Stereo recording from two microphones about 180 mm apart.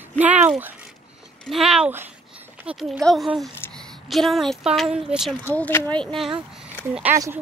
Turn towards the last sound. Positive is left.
turn(degrees=-10)  # may be behind; listen again after turning